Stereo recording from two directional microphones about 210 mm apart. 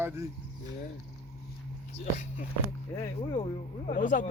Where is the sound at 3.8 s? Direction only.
40° left (ahead or behind).